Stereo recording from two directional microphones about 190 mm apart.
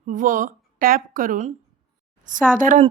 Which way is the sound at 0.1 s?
45° right (ahead or behind).